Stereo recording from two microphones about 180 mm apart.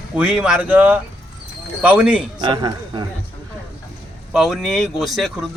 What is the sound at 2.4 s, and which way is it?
Speech, 25° right (ahead or behind).